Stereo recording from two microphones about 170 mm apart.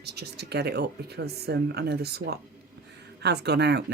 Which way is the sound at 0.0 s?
70° right (ahead or behind).